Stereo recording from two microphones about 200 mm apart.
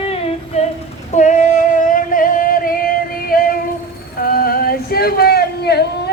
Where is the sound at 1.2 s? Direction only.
40° left (ahead or behind).